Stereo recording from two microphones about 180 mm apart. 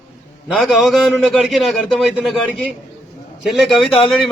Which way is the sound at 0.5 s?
Centre (ahead or behind).